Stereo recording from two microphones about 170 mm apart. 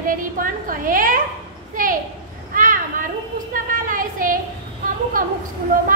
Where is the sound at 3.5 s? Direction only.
50° right (ahead or behind).